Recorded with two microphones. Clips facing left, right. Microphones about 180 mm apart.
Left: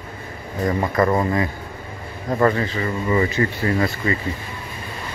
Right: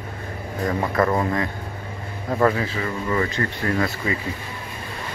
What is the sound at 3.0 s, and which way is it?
Speech, 10° left (ahead or behind).